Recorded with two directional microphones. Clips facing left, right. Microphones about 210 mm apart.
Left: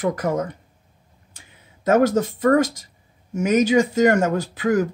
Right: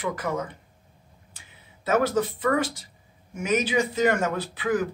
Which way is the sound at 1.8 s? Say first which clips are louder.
Left 6 dB; 45° left (ahead or behind).